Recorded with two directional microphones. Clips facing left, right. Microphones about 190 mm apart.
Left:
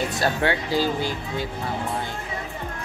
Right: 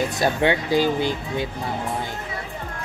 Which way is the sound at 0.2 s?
20° right (ahead or behind).